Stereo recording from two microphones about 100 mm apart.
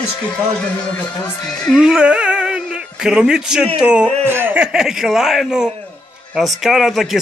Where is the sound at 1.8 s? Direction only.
10° right (ahead or behind).